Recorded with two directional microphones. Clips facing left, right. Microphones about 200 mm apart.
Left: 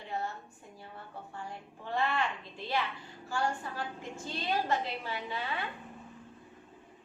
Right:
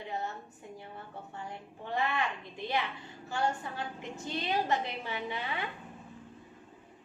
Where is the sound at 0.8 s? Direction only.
20° right (ahead or behind).